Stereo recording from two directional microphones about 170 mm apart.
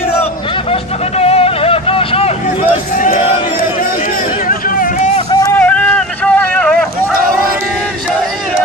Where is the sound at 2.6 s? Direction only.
55° left (ahead or behind).